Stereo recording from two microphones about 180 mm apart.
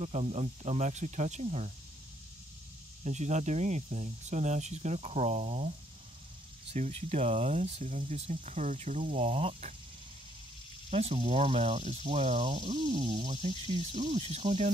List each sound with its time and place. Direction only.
0.0 s speech: 35° right (ahead or behind)
3.0 s speech: 40° right (ahead or behind)
10.9 s speech: 35° right (ahead or behind)